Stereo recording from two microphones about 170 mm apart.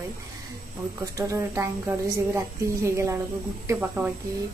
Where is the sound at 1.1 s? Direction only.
15° right (ahead or behind).